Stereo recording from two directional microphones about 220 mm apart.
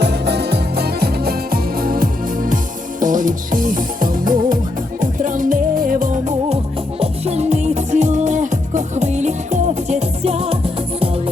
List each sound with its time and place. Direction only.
0.0 s music: 50° right (ahead or behind); by 10.6 s 25° right (ahead or behind)